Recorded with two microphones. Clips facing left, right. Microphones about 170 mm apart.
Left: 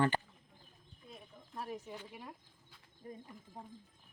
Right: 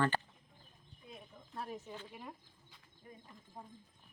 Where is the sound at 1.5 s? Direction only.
5° left (ahead or behind).